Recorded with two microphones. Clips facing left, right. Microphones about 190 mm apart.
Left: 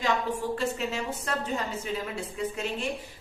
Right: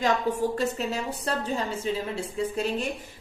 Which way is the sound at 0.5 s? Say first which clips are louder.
Right 2 dB; 35° right (ahead or behind).